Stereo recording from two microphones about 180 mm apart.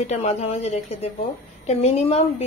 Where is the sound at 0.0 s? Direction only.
35° left (ahead or behind).